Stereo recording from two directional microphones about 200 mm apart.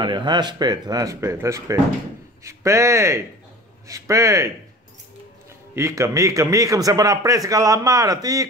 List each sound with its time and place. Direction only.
0.0 s a man's voice: 20° right (ahead or behind)
5.8 s a man's voice: 15° right (ahead or behind)